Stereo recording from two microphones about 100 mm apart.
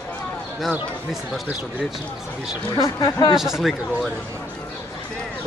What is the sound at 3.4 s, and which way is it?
Speech, 5° right (ahead or behind).